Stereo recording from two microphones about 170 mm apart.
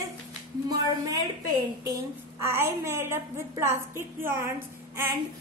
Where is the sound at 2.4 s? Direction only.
15° right (ahead or behind).